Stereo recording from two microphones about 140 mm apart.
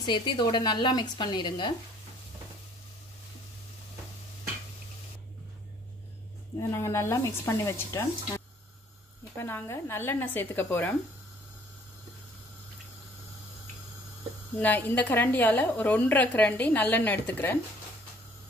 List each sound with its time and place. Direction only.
0.0 s speech: 35° left (ahead or behind)
6.7 s speech: 20° left (ahead or behind)
9.4 s a woman's voice: 15° left (ahead or behind)
14.6 s a woman's voice: 10° left (ahead or behind)